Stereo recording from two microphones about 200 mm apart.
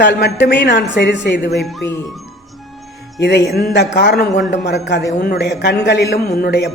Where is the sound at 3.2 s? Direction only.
55° left (ahead or behind).